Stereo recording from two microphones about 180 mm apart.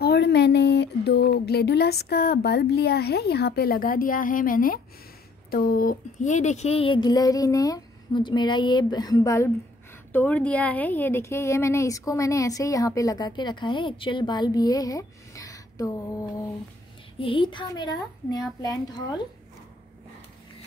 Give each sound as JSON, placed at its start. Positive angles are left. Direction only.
{"t": 0.0, "sound": "speech", "side_deg": 65}